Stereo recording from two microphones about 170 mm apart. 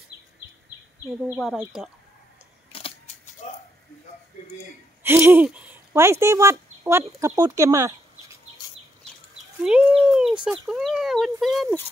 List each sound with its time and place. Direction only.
1.2 s speech: 5° right (ahead or behind)
2.7 s a sound: 35° left (ahead or behind)
5.0 s speech: 15° right (ahead or behind)
9.6 s speech: 5° right (ahead or behind)